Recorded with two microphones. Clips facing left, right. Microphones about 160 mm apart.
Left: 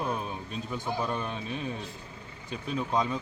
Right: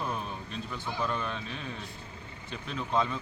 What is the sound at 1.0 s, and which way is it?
Speech, 15° left (ahead or behind).